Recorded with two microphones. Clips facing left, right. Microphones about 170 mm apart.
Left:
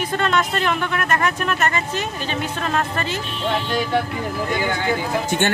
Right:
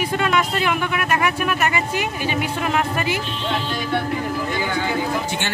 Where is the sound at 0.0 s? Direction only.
10° right (ahead or behind).